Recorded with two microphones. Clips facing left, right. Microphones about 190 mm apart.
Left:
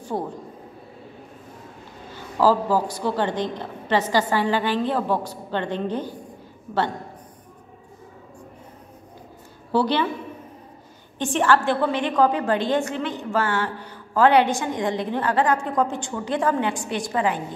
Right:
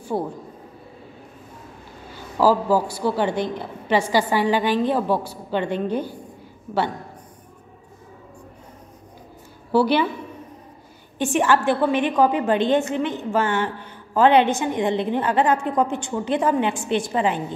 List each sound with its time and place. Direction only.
2.3 s a woman's voice: 10° right (ahead or behind)
9.7 s a woman's voice: 10° right (ahead or behind)
11.3 s a woman's voice: 15° right (ahead or behind)